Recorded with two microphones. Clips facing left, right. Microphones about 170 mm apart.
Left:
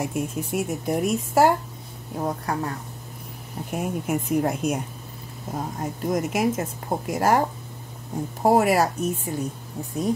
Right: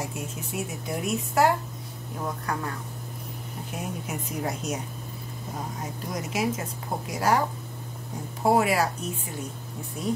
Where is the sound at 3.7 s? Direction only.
55° left (ahead or behind).